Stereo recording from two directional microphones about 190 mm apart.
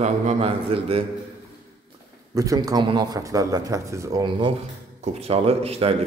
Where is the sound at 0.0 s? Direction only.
35° right (ahead or behind).